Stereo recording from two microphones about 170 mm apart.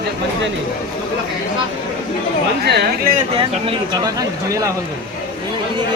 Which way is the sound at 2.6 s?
80° right.